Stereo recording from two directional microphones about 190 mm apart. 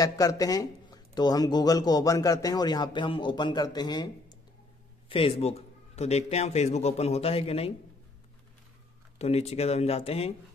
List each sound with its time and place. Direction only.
0.0 s a man's voice: 20° left (ahead or behind)
9.2 s a man's voice: 35° left (ahead or behind)